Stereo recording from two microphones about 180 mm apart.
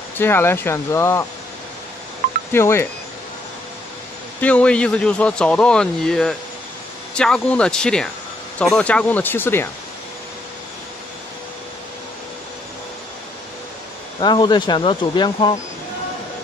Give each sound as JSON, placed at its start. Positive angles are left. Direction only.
{"t": 0.2, "sound": "speech", "side_deg": 10}
{"t": 2.5, "sound": "speech", "side_deg": 15}
{"t": 4.4, "sound": "speech", "side_deg": 5}
{"t": 14.2, "sound": "speech", "side_deg": 25}